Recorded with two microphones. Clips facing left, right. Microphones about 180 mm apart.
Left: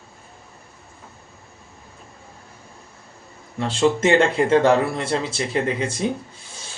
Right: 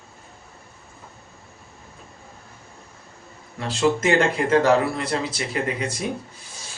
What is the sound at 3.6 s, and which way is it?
Speech, 30° left (ahead or behind).